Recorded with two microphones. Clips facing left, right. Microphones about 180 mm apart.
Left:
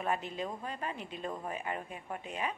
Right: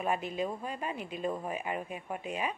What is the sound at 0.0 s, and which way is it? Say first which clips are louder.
A woman's voice: right 3 dB; 15° right (ahead or behind).